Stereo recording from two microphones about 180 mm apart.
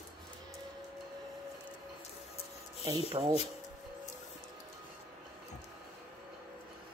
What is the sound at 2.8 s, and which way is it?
Speech, 25° right (ahead or behind).